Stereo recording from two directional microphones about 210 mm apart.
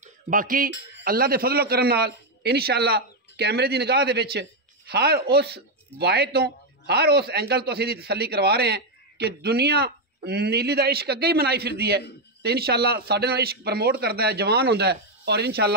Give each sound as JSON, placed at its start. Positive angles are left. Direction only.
{"t": 0.0, "sound": "speech", "side_deg": -40}